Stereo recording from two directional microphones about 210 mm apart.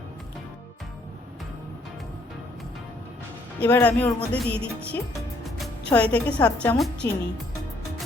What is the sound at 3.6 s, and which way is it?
Speech, 10° left (ahead or behind).